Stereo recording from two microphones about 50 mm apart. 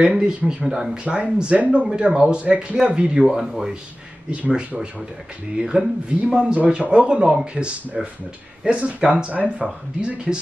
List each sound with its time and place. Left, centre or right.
0.0 s speech: centre
2.0 s speech: centre
2.2 s speech: right
3.3 s speech: centre; by 10.4 s right